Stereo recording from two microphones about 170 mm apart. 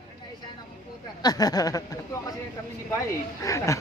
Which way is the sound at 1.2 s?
20° left (ahead or behind).